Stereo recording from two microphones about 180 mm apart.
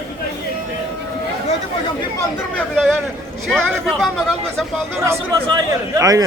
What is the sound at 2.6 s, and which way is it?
Speech, 5° left (ahead or behind).